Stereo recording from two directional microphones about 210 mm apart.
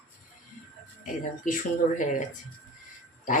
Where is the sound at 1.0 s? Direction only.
40° left (ahead or behind).